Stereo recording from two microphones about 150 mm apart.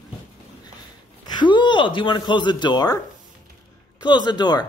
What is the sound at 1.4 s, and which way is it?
Speech, 30° left (ahead or behind).